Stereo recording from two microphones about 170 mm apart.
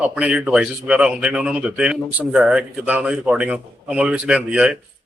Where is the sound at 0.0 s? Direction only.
5° right (ahead or behind).